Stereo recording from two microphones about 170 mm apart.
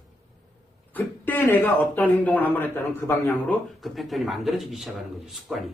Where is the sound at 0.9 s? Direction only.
10° left (ahead or behind).